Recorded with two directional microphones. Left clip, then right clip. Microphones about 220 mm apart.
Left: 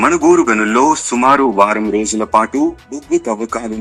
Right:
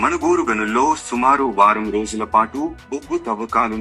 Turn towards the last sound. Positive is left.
turn(degrees=35)  # may be behind; listen again after turning